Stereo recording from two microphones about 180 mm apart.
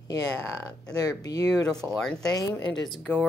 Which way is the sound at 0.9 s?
20° left (ahead or behind).